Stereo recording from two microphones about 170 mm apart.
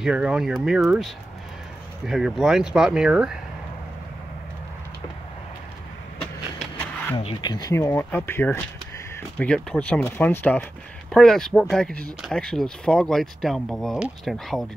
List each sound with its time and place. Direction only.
0.0 s speech: 5° right (ahead or behind)
7.2 s speech: 35° left (ahead or behind)
7.5 s speech: 20° left (ahead or behind); by 14.7 s centre (ahead or behind)